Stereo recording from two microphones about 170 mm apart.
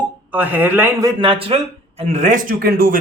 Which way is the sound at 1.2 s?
30° right (ahead or behind).